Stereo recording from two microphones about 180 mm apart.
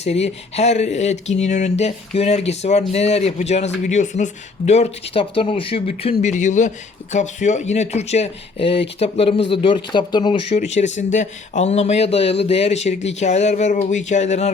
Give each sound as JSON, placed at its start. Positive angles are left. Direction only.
{"t": 0.0, "sound": "speech", "side_deg": 35}
{"t": 10.8, "sound": "speech", "side_deg": 40}